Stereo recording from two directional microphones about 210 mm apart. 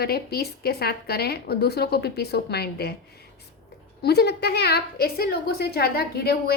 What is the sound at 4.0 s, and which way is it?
A woman's voice, 50° left (ahead or behind).